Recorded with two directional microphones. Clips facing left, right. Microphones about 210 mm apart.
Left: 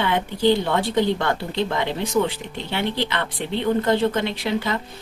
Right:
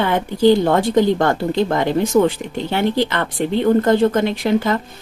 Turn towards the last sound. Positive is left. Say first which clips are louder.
# right 7 dB
turn(degrees=-45)  # may be behind; listen again after turning